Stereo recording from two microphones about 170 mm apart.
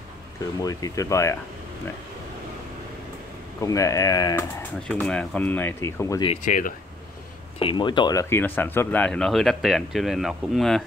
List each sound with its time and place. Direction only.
0.6 s speech: 20° left (ahead or behind)
3.6 s speech: 20° left (ahead or behind)
4.8 s speech: 5° left (ahead or behind)
6.2 s speech: 40° left (ahead or behind)
7.5 s speech: 30° left (ahead or behind); by 10.8 s centre (ahead or behind)